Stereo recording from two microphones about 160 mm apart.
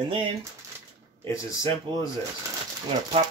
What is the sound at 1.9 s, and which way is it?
Speech, 30° right (ahead or behind).